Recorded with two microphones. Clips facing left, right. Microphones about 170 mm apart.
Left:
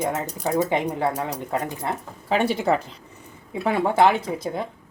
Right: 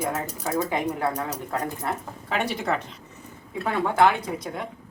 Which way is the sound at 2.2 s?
30° left (ahead or behind).